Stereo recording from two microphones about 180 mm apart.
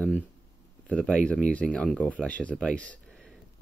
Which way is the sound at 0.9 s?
5° left (ahead or behind).